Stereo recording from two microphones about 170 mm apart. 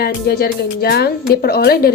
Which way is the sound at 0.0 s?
70° left (ahead or behind).